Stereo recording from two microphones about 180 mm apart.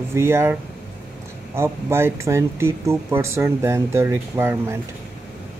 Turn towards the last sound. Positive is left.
turn(degrees=-15)  # may be behind; listen again after turning